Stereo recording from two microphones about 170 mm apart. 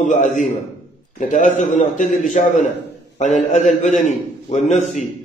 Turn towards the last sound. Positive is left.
turn(degrees=45)  # may be behind; listen again after turning